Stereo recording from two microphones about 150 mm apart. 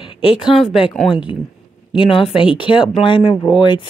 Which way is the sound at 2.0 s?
35° left (ahead or behind).